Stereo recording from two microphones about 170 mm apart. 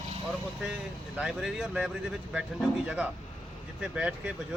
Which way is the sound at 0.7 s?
5° right (ahead or behind).